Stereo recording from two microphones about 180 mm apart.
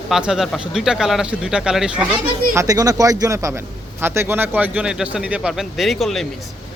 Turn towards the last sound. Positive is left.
turn(degrees=0)  # may be behind; listen again after turning